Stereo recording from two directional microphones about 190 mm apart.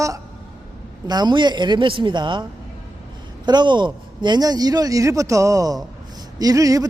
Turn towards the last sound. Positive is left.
turn(degrees=-20)  # may be behind; listen again after turning